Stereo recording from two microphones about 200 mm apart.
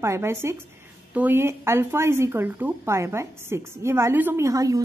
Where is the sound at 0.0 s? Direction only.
15° right (ahead or behind).